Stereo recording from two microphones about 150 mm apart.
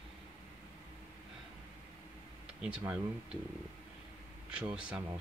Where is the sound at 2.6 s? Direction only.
5° right (ahead or behind).